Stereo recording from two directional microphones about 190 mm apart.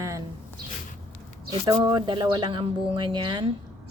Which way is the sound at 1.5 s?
20° right (ahead or behind).